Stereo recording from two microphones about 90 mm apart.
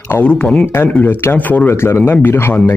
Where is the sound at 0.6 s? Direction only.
25° left (ahead or behind).